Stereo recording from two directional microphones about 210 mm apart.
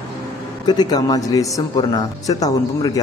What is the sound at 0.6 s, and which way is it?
Speech, 20° left (ahead or behind).